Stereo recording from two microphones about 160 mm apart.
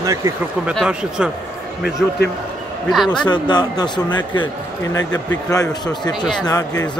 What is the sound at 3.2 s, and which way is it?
Speech, 25° left (ahead or behind).